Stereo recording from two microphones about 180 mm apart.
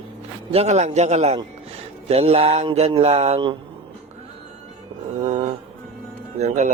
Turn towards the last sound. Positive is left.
turn(degrees=-40)  # may be behind; listen again after turning